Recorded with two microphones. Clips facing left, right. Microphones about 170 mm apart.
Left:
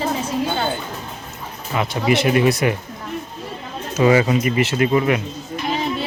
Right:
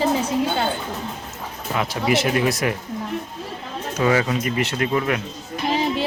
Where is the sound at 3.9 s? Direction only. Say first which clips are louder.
Left 5 dB; 10° left (ahead or behind).